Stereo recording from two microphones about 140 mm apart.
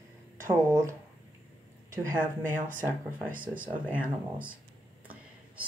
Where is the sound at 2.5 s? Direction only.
70° right (ahead or behind).